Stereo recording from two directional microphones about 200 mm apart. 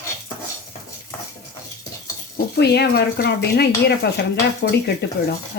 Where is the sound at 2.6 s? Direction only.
55° left (ahead or behind).